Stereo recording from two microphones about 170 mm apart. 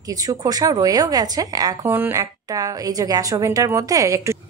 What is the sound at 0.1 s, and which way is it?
Speech, 20° right (ahead or behind).